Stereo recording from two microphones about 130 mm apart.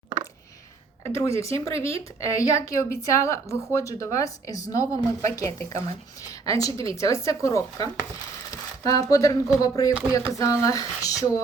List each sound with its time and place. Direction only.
1.0 s speech: 20° left (ahead or behind)